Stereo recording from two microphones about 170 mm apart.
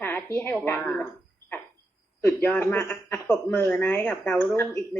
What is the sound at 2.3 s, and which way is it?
Speech, 15° left (ahead or behind).